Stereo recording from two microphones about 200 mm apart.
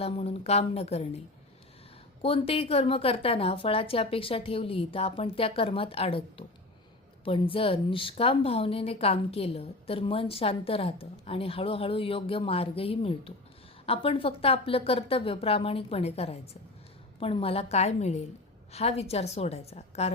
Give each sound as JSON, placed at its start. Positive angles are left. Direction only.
{"t": 0.0, "sound": "a woman's voice", "side_deg": 30}
{"t": 2.2, "sound": "a woman's voice", "side_deg": 30}